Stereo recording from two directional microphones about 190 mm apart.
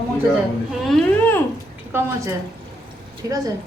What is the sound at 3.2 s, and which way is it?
Speech, 20° right (ahead or behind).